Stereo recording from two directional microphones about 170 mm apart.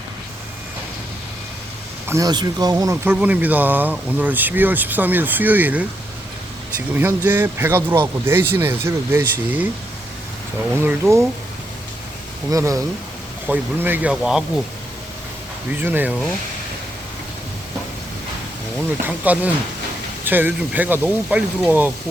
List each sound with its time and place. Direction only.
2.0 s speech: 20° right (ahead or behind)
6.9 s speech: 10° right (ahead or behind)
10.8 s speech: 15° right (ahead or behind)
12.5 s speech: 20° right (ahead or behind)
15.8 s speech: 10° right (ahead or behind)
19.0 s speech: 10° right (ahead or behind)